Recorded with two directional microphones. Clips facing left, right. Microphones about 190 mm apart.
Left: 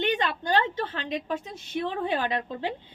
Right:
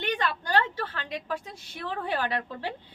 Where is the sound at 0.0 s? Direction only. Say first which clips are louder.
Left 3 dB; 20° left (ahead or behind).